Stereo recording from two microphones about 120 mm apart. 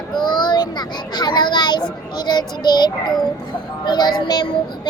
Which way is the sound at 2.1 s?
35° left (ahead or behind).